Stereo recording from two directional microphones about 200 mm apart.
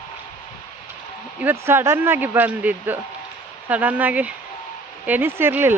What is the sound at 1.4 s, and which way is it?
Speech, 10° right (ahead or behind).